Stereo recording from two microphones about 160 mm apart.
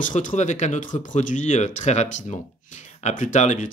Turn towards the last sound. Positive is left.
turn(degrees=50)  # may be behind; listen again after turning